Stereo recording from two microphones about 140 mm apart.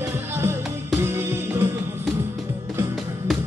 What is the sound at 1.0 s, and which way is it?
Music, 15° right (ahead or behind).